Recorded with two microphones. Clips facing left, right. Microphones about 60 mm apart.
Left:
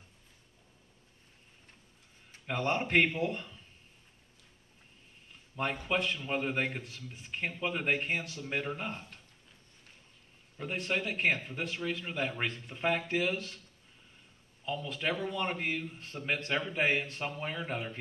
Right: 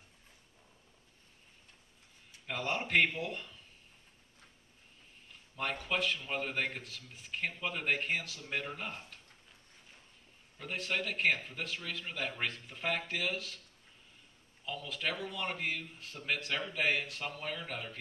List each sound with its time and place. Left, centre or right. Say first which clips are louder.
2.4 s speech: left 4 dB; centre
5.6 s speech: left 3 dB; centre
7.0 s speech: right 1 dB; centre
10.6 s speech: left 3 dB; centre
14.6 s a man's voice: left 3 dB; centre